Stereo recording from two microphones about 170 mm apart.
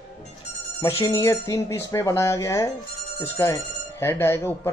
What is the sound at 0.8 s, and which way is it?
Speech, 20° left (ahead or behind).